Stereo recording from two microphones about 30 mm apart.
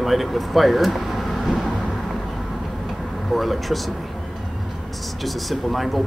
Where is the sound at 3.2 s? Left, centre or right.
Centre.